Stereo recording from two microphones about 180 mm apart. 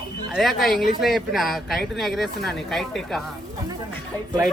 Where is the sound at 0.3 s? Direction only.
Centre (ahead or behind).